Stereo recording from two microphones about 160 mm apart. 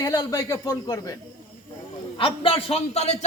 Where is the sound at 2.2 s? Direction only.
35° left (ahead or behind).